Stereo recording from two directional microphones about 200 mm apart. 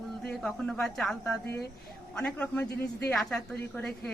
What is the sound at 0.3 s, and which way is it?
A woman's voice, 5° left (ahead or behind).